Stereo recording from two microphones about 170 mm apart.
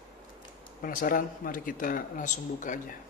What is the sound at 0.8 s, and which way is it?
Speech, 55° left (ahead or behind).